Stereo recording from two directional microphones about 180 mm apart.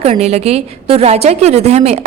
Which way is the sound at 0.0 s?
35° right (ahead or behind).